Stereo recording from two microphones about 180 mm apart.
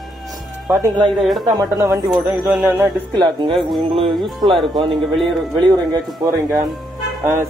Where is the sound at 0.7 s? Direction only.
20° right (ahead or behind).